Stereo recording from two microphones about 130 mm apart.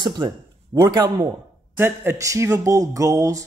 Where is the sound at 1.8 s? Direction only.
20° right (ahead or behind).